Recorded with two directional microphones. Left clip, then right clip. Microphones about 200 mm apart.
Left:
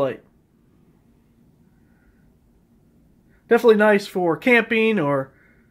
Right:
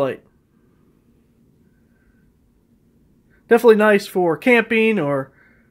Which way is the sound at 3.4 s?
20° right (ahead or behind).